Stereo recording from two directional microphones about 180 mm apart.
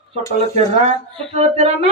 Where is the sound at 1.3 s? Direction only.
35° right (ahead or behind).